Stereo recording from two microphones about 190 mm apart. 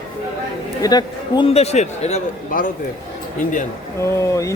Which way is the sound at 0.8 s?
20° left (ahead or behind).